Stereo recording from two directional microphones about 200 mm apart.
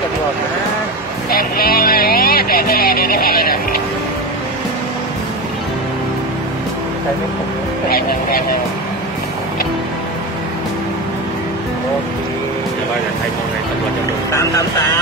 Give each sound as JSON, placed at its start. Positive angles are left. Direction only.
{"t": 1.3, "sound": "music", "side_deg": 45}
{"t": 14.3, "sound": "speech", "side_deg": 15}